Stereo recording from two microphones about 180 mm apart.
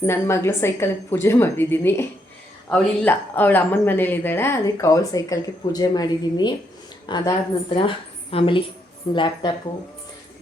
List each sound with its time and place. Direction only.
0.0 s a woman's voice: 15° left (ahead or behind)